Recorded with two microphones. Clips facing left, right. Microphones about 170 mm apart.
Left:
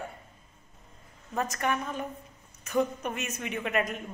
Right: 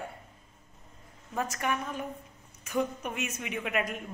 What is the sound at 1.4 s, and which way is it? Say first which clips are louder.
Speech: left 2 dB; 5° right (ahead or behind).